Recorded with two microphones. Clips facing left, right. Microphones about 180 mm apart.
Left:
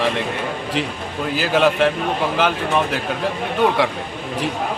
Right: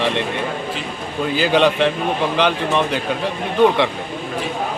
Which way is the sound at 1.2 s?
Centre (ahead or behind).